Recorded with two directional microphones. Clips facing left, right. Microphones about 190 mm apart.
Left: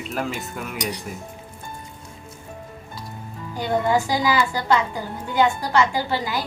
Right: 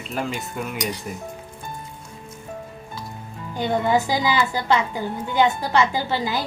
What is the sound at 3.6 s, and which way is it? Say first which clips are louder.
A woman's voice: even; 20° right (ahead or behind).